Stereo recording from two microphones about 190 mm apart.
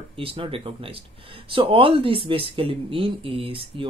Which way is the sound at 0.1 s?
30° right (ahead or behind).